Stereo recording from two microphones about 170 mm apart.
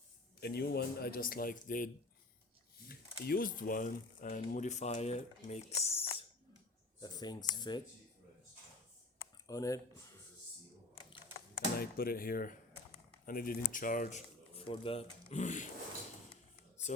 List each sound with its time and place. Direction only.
0.3 s speech: 70° left (ahead or behind); by 1.9 s 55° left (ahead or behind)
2.9 s speech: 60° left (ahead or behind); by 6.2 s 35° left (ahead or behind)
7.0 s speech: 25° left (ahead or behind)
9.5 s speech: 20° left (ahead or behind)
11.8 s speech: 60° left (ahead or behind); by 15.6 s 45° left (ahead or behind)
16.9 s a sound: 40° left (ahead or behind)